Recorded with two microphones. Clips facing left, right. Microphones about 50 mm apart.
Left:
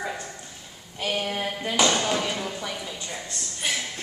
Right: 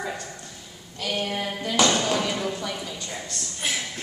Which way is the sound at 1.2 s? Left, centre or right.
Centre.